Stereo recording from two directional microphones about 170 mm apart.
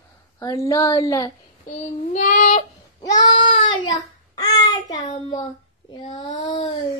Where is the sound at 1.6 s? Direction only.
50° left (ahead or behind).